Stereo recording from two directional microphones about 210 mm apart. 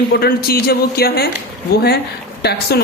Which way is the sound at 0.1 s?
45° left (ahead or behind).